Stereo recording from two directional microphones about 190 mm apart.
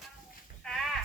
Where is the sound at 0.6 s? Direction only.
5° left (ahead or behind).